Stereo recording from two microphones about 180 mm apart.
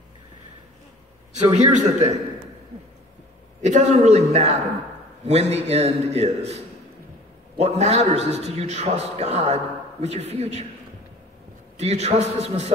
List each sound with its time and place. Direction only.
1.3 s a man's voice: 40° right (ahead or behind)
3.6 s a man's voice: 40° right (ahead or behind)
11.7 s a man's voice: 35° right (ahead or behind)